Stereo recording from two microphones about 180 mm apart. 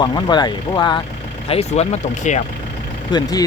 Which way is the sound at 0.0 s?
25° left (ahead or behind).